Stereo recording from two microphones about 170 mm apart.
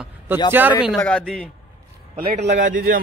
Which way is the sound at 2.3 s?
45° right (ahead or behind).